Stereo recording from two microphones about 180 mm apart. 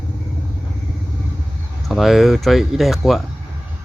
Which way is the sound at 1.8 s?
Centre (ahead or behind).